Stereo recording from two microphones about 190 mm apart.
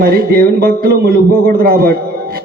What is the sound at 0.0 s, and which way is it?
A man's voice, 55° right (ahead or behind).